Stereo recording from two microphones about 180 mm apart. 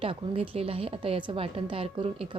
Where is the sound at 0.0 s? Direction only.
35° right (ahead or behind).